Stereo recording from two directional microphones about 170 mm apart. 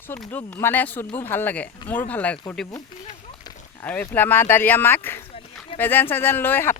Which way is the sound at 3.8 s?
10° left (ahead or behind).